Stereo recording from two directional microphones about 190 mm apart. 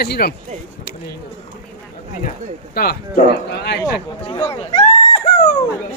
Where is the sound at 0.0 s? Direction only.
55° left (ahead or behind).